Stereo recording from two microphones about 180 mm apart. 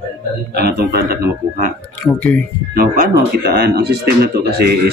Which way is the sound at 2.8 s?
55° right (ahead or behind).